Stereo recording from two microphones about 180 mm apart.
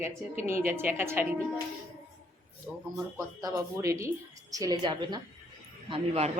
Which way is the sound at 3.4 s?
15° right (ahead or behind).